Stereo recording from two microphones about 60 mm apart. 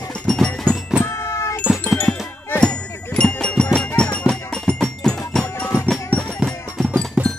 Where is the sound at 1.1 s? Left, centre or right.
Left.